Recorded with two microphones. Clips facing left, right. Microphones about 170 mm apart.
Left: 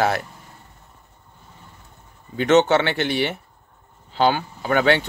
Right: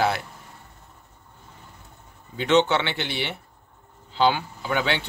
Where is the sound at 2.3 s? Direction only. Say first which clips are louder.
Left 4 dB; 45° left (ahead or behind).